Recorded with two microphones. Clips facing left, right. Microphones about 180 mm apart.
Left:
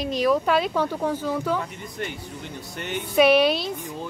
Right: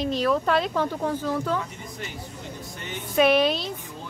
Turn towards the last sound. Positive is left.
turn(degrees=10)  # may be behind; listen again after turning